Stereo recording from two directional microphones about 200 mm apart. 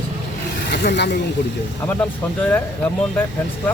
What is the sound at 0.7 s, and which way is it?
Speech, 55° left (ahead or behind).